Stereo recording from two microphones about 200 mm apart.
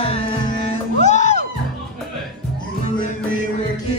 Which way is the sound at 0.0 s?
30° left (ahead or behind).